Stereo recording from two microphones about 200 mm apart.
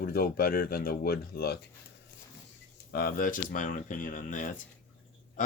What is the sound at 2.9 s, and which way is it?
Speech, 45° left (ahead or behind).